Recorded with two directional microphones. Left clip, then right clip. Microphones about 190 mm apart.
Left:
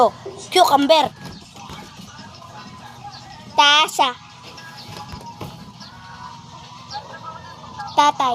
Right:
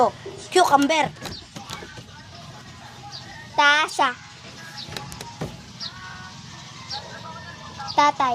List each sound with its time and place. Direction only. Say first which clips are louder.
0.5 s a woman's voice: left 4 dB; 30° left (ahead or behind)
3.5 s a child's voice: left 4 dB; 15° left (ahead or behind)
7.9 s a woman's voice: left 3 dB; 20° left (ahead or behind)